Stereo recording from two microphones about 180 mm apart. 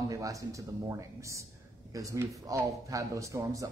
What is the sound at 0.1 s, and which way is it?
Speech, 20° right (ahead or behind).